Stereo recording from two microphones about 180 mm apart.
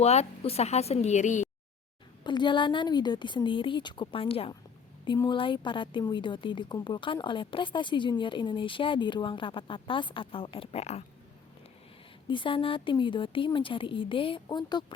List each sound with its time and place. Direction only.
0.0 s a woman's voice: 35° left (ahead or behind)
2.2 s a woman's voice: 25° left (ahead or behind)
12.3 s a woman's voice: 30° left (ahead or behind)